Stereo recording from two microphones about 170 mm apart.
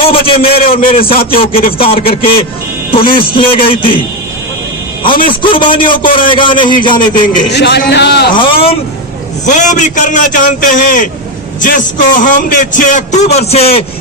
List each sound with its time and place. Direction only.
0.0 s speech: 35° left (ahead or behind)
1.1 s a man's voice: 60° left (ahead or behind)
1.4 s speech: 35° left (ahead or behind)
5.4 s a man's voice: 30° left (ahead or behind)
7.2 s a man's voice: 80° left
8.4 s speech: 30° left (ahead or behind)
9.5 s a man's voice: 45° left (ahead or behind)